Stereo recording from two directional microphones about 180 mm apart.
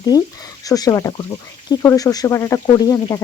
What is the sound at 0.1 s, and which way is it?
Speech, 20° left (ahead or behind).